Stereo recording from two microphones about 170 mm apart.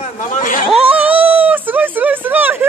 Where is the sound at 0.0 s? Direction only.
50° left (ahead or behind).